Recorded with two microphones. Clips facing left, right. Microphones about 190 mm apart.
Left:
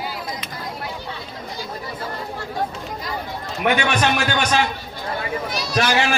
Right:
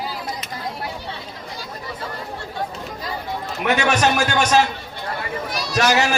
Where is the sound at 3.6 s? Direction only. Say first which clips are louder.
Right 1 dB; 45° right (ahead or behind).